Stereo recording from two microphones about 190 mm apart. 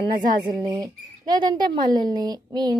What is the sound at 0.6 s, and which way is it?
A woman's voice, 20° right (ahead or behind).